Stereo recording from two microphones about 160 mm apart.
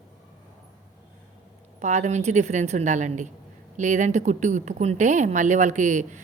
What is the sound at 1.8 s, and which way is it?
Speech, 45° right (ahead or behind).